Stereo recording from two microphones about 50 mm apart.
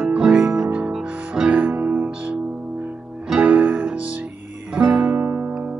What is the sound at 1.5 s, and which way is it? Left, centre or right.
Music, right.